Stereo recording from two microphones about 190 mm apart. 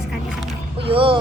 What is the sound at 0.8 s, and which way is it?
Speech, 30° right (ahead or behind).